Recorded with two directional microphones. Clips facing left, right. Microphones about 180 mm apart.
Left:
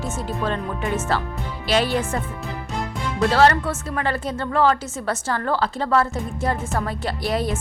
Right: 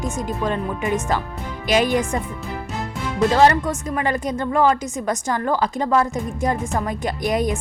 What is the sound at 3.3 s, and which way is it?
A woman's voice, 15° right (ahead or behind).